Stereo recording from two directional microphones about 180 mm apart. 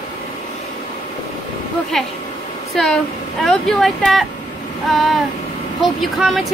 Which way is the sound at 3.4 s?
5° left (ahead or behind).